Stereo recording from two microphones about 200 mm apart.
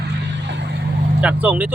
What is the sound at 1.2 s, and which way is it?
Speech, 5° right (ahead or behind).